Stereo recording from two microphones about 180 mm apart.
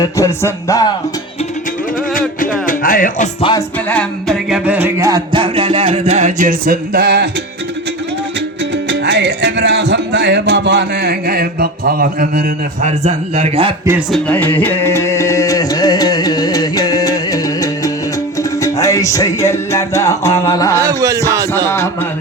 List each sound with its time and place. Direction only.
0.0 s speech: 15° left (ahead or behind)
2.6 s music: 50° left (ahead or behind)
3.8 s speech: 5° left (ahead or behind)
4.4 s music: 5° right (ahead or behind); by 7.3 s 65° right (ahead or behind)
8.7 s music: 75° right (ahead or behind); by 13.7 s 35° right (ahead or behind)
14.1 s music: 10° left (ahead or behind)
20.5 s speech: 20° left (ahead or behind)
20.8 s music: 20° right (ahead or behind)